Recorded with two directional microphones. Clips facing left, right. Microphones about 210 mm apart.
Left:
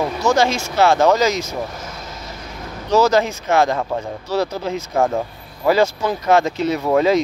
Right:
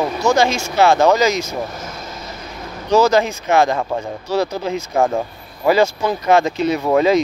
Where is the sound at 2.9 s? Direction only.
15° right (ahead or behind).